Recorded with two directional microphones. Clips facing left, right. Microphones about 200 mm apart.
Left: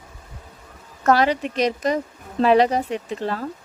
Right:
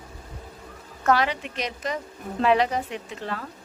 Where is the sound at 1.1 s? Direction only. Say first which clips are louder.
Left 5 dB; 40° left (ahead or behind).